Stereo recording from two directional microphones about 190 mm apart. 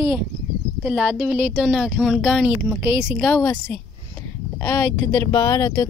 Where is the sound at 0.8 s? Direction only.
5° right (ahead or behind).